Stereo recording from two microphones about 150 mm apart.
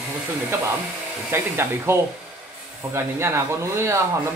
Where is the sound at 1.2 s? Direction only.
15° right (ahead or behind).